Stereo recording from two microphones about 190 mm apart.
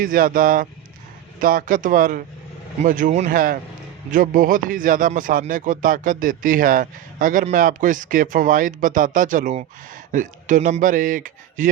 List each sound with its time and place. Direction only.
0.0 s speech: 45° right (ahead or behind)